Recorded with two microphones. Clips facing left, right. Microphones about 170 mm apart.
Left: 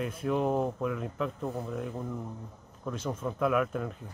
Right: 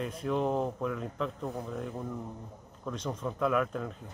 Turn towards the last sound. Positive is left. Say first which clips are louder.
# left 1 dB
turn(degrees=5)  # may be behind; listen again after turning